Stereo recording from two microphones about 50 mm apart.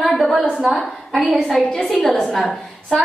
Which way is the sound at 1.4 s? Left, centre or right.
Centre.